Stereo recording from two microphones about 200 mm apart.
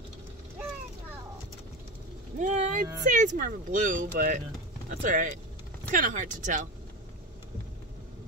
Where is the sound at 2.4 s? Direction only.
40° right (ahead or behind).